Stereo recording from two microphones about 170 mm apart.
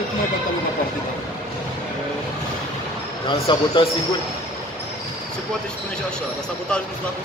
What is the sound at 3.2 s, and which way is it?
Speech, 30° left (ahead or behind).